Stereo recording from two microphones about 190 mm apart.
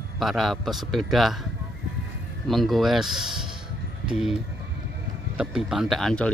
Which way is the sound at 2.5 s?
Centre (ahead or behind).